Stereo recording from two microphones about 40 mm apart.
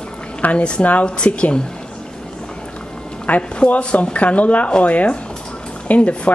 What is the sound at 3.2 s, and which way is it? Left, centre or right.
Speech, left.